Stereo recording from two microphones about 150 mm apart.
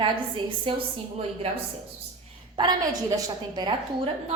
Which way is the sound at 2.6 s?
25° right (ahead or behind).